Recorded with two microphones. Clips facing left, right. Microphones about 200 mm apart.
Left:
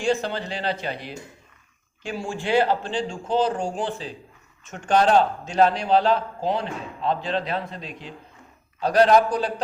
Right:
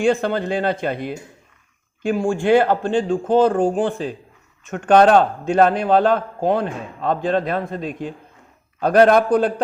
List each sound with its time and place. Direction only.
0.0 s a man's voice: 55° right (ahead or behind)